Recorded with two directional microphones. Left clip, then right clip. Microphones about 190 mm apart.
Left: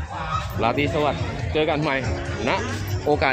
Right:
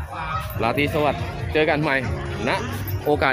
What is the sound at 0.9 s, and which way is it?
Speech, 15° right (ahead or behind).